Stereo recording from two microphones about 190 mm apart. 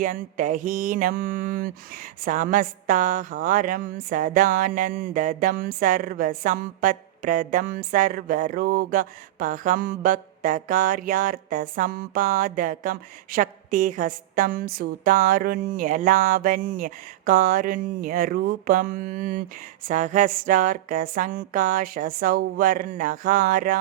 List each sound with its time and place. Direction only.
0.0 s a woman's voice: 45° right (ahead or behind)